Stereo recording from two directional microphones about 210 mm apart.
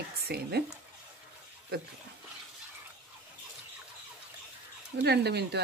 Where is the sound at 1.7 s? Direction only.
50° right (ahead or behind).